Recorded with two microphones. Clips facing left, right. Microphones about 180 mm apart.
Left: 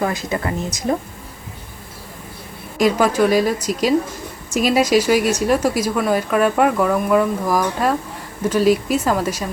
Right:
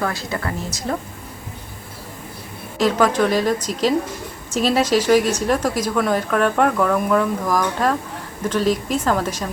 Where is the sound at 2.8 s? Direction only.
10° left (ahead or behind).